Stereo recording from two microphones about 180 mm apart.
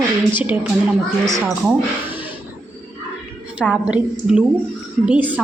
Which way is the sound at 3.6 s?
5° right (ahead or behind).